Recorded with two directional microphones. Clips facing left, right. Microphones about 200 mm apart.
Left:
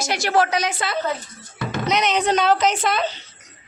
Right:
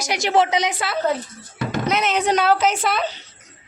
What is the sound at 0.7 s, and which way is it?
A woman's voice, 5° right (ahead or behind).